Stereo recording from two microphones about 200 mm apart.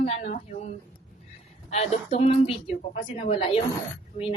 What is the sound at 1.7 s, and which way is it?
A woman's voice, 30° left (ahead or behind).